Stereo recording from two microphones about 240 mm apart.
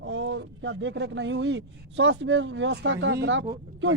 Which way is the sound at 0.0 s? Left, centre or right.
Right.